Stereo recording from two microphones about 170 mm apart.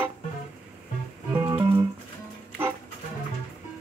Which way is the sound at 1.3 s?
20° right (ahead or behind).